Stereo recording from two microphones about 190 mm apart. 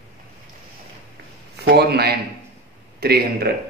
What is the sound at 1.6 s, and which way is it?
A man's voice, 60° right (ahead or behind).